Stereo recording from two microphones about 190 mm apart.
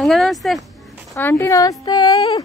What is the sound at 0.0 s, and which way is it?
Speech, centre (ahead or behind).